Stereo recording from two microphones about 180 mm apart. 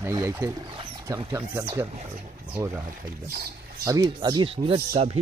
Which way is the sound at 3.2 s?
55° right (ahead or behind).